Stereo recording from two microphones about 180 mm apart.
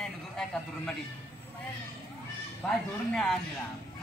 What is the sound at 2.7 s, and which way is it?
Speech, 5° left (ahead or behind).